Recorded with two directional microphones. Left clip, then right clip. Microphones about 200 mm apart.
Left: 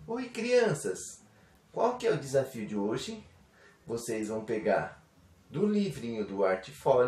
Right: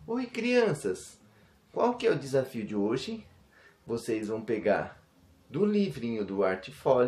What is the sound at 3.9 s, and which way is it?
Speech, 35° right (ahead or behind).